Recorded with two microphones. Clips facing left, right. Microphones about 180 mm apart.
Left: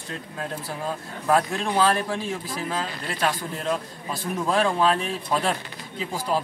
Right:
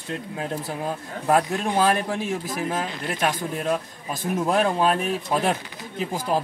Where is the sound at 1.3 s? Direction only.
15° right (ahead or behind).